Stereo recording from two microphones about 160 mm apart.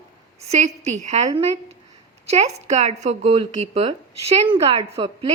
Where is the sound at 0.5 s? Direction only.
45° right (ahead or behind).